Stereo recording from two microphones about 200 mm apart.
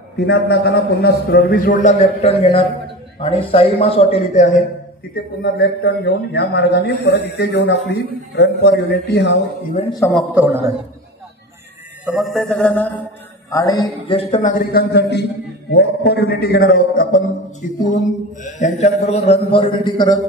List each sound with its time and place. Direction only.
0.2 s a man's voice: 60° left (ahead or behind); by 4.6 s 35° left (ahead or behind)
5.1 s a man's voice: 55° left (ahead or behind)
10.1 s a man's voice: 10° right (ahead or behind)
12.1 s mantra: centre (ahead or behind)
13.5 s a man's voice: 15° left (ahead or behind)
14.0 s a man's voice: 30° left (ahead or behind)